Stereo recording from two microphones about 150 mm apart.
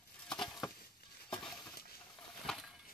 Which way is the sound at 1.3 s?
30° left (ahead or behind).